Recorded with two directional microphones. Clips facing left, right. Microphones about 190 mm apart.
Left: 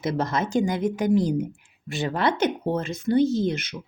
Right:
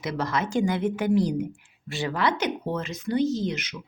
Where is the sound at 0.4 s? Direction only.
20° left (ahead or behind).